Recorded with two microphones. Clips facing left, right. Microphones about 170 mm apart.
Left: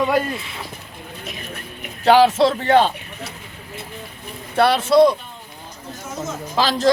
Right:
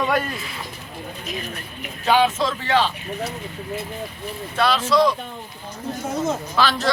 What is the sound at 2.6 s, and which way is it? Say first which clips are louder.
Speech: left 2 dB; 50° left (ahead or behind).